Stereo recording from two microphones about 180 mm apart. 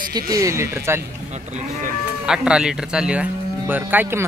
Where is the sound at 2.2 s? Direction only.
5° right (ahead or behind).